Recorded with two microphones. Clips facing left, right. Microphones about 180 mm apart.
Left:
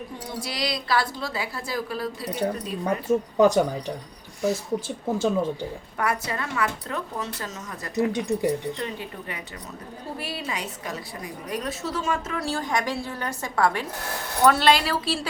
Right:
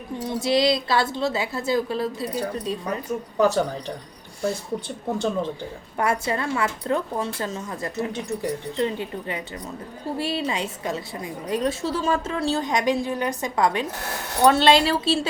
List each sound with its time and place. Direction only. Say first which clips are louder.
0.3 s a woman's voice: right 10 dB; 25° right (ahead or behind)
2.8 s speech: left 5 dB; 25° left (ahead or behind)
5.1 s speech: left 2 dB; 5° left (ahead or behind)
6.0 s a woman's voice: right 4 dB; 25° right (ahead or behind)
8.1 s speech: left 3 dB; 15° left (ahead or behind)
8.8 s a woman's voice: right 7 dB; 25° right (ahead or behind)